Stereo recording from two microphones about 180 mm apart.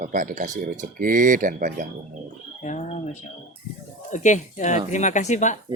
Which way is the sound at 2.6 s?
40° left (ahead or behind).